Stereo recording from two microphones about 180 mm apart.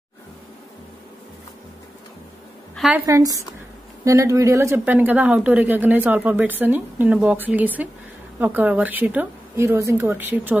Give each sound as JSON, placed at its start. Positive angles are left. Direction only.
{"t": 2.9, "sound": "speech", "side_deg": -15}